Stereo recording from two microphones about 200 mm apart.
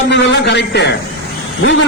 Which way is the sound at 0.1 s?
60° left (ahead or behind).